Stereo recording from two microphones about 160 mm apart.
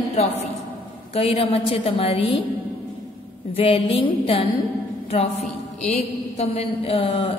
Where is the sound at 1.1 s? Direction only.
40° left (ahead or behind).